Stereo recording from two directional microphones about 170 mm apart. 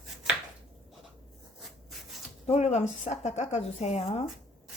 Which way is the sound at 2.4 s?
40° left (ahead or behind).